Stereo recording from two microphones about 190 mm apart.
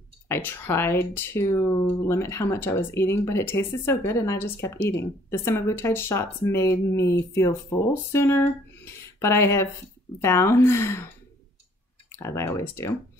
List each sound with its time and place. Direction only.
0.3 s speech: 10° left (ahead or behind)
12.2 s speech: 15° left (ahead or behind)